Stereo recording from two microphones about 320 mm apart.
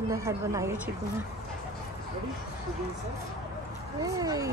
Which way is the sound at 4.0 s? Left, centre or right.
Centre.